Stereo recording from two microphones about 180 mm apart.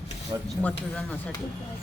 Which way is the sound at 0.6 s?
5° left (ahead or behind).